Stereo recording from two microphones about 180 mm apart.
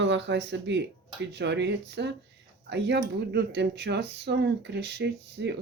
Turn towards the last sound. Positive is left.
turn(degrees=-70)  # may be behind; listen again after turning